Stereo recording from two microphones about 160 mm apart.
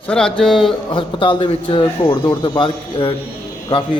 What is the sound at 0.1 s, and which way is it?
Speech, 5° left (ahead or behind).